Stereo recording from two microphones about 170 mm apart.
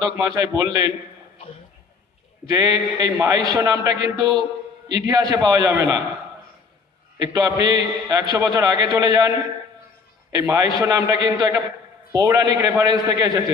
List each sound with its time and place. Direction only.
0.0 s a man's voice: 25° right (ahead or behind)
2.5 s a man's voice: 20° right (ahead or behind)
7.2 s a man's voice: 20° right (ahead or behind)
10.4 s a man's voice: 20° right (ahead or behind)